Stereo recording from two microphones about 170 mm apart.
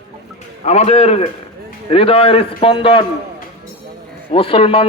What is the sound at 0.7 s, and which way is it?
Speech, 40° left (ahead or behind).